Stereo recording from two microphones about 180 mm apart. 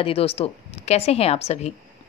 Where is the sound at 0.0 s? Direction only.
30° left (ahead or behind).